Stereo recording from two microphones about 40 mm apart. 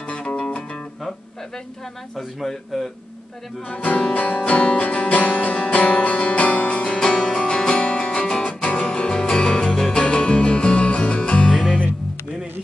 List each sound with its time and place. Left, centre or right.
0.1 s music: left
2.1 s a man's voice: centre
3.6 s speech: left
4.4 s music: left
6.8 s music: left
9.8 s music: centre
10.0 s music: left